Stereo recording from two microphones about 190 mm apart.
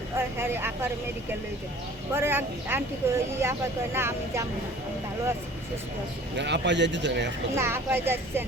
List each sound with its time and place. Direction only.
0.2 s speech: 10° right (ahead or behind)
2.1 s speech: 10° right (ahead or behind)
6.3 s speech: 65° right (ahead or behind)
7.5 s speech: 10° right (ahead or behind)